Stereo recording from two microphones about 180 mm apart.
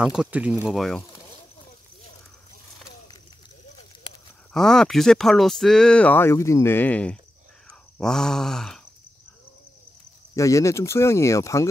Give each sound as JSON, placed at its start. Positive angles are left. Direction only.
{"t": 0.0, "sound": "speech", "side_deg": -5}
{"t": 4.6, "sound": "speech", "side_deg": 5}
{"t": 10.3, "sound": "speech", "side_deg": 15}